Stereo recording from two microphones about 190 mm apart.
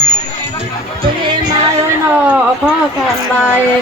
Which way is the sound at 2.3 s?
5° right (ahead or behind).